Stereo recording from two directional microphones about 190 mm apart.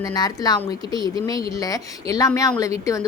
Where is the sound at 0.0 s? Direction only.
20° left (ahead or behind).